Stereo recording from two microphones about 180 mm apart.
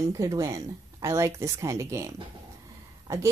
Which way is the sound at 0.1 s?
20° right (ahead or behind).